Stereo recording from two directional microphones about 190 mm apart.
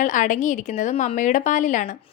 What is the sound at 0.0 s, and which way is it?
A woman's voice, 40° left (ahead or behind).